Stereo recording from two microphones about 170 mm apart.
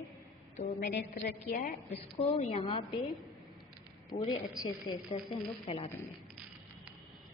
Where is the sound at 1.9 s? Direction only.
35° left (ahead or behind).